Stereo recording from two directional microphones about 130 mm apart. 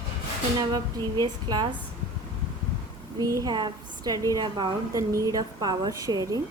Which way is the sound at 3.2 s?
25° right (ahead or behind).